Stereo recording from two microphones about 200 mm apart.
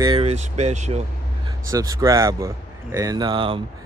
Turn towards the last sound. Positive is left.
turn(degrees=-25)  # may be behind; listen again after turning